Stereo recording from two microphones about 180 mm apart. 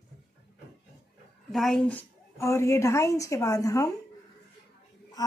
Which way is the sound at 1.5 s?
Centre (ahead or behind).